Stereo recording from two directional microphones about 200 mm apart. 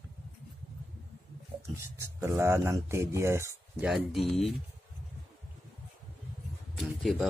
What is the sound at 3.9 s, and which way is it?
Speech, centre (ahead or behind).